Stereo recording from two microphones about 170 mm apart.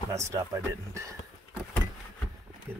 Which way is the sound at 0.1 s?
15° right (ahead or behind).